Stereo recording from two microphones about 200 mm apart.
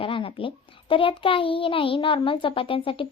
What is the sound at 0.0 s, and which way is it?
Speech, 25° left (ahead or behind).